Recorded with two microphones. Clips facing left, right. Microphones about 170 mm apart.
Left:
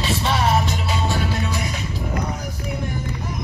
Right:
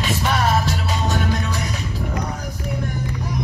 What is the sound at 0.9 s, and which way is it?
Music, 10° left (ahead or behind).